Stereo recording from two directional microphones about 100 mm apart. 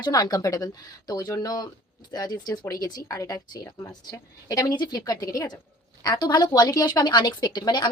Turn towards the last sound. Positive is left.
turn(degrees=45)  # may be behind; listen again after turning